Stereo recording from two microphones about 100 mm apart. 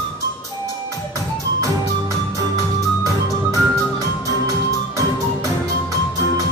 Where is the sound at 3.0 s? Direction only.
30° right (ahead or behind).